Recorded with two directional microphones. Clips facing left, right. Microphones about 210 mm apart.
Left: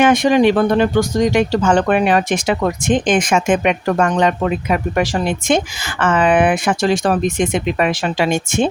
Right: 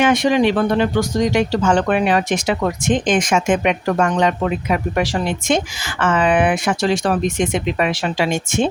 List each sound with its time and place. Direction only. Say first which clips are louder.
0.0 s speech: left 3 dB; 50° left (ahead or behind)